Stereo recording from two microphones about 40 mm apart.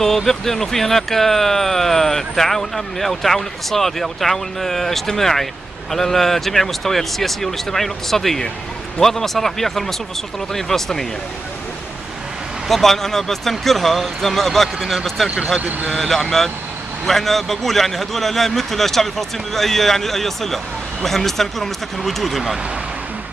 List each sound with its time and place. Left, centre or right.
0.0 s speech: centre
12.6 s a man's voice: centre
15.2 s speech: right
15.9 s a man's voice: centre